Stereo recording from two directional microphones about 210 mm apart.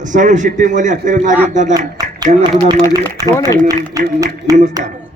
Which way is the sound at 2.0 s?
20° right (ahead or behind).